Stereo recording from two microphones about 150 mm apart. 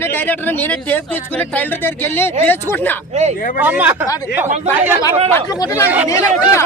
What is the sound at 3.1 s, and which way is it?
Speech, 50° right (ahead or behind).